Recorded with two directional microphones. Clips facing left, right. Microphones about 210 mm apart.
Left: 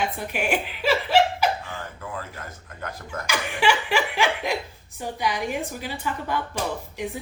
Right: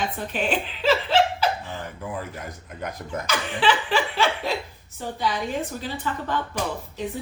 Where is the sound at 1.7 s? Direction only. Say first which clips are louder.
Right 2 dB; 15° right (ahead or behind).